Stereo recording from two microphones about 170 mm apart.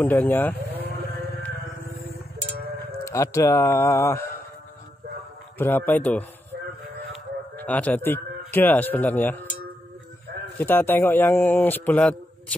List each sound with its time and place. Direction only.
0.0 s a man's voice: 10° left (ahead or behind)
3.1 s a man's voice: 20° left (ahead or behind)
5.6 s a man's voice: 10° left (ahead or behind)
7.5 s speech: 10° left (ahead or behind)
10.6 s a man's voice: 10° left (ahead or behind)